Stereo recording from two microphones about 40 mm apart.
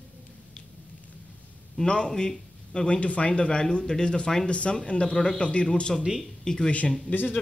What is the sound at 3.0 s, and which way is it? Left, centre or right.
Speech, left.